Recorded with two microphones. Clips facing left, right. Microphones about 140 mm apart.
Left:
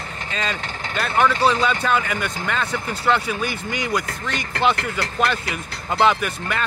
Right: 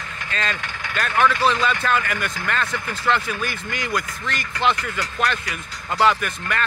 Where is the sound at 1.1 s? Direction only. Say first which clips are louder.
Left 1 dB; 25° left (ahead or behind).